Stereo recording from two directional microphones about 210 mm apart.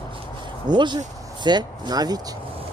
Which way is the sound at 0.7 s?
20° right (ahead or behind).